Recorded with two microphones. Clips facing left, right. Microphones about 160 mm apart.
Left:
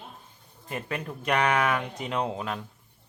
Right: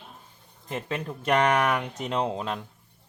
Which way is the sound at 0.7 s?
25° right (ahead or behind).